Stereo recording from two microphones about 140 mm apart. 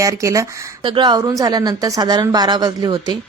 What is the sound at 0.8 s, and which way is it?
Speech, 35° right (ahead or behind).